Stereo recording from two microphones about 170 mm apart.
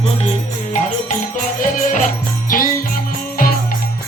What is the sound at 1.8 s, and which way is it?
Music, 50° left (ahead or behind).